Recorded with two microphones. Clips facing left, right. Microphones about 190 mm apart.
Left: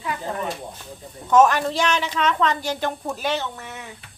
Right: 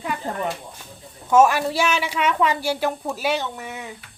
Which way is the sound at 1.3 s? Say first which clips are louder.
Even; 10° right (ahead or behind).